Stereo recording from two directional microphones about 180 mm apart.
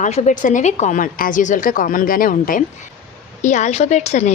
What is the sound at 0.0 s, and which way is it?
A woman's voice, 40° left (ahead or behind).